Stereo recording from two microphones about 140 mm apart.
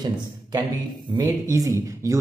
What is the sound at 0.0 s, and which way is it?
A man's voice, 30° right (ahead or behind).